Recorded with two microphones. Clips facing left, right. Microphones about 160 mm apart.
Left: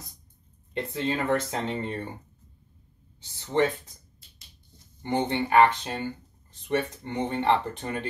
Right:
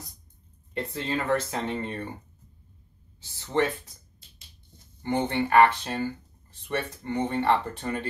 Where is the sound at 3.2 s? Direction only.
20° left (ahead or behind).